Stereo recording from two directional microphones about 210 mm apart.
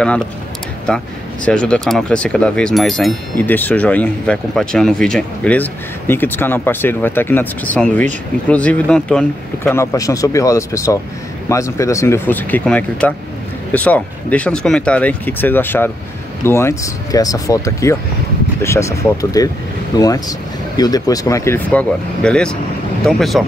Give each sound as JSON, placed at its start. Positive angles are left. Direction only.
{"t": 0.8, "sound": "speech", "side_deg": 5}
{"t": 9.7, "sound": "speech", "side_deg": 15}